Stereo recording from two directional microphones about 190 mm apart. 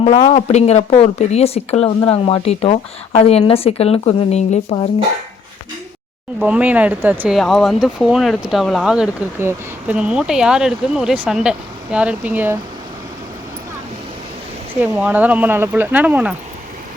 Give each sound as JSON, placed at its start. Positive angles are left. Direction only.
{"t": 0.0, "sound": "speech", "side_deg": 30}
{"t": 6.4, "sound": "speech", "side_deg": -10}
{"t": 14.8, "sound": "speech", "side_deg": -10}